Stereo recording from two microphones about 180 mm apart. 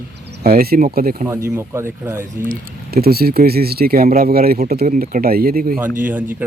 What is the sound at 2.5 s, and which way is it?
Speech, 60° right (ahead or behind).